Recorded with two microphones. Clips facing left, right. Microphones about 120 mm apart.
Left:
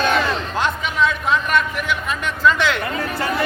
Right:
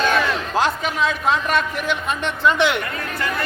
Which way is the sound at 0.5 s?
35° right (ahead or behind).